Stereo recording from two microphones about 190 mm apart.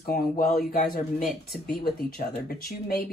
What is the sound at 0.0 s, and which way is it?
Speech, 50° left (ahead or behind).